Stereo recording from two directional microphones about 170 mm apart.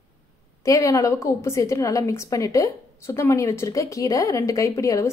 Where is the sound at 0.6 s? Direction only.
20° left (ahead or behind).